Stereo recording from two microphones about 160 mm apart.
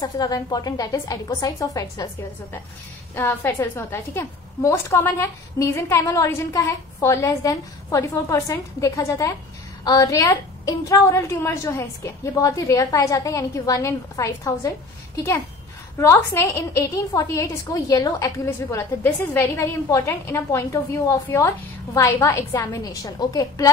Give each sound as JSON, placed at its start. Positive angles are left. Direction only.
{"t": 0.0, "sound": "a woman's voice", "side_deg": 25}
{"t": 3.2, "sound": "a woman's voice", "side_deg": 15}
{"t": 16.0, "sound": "a woman's voice", "side_deg": 20}